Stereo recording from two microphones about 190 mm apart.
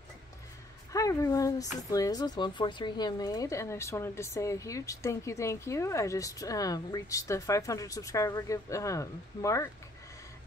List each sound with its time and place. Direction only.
0.9 s speech: 15° left (ahead or behind)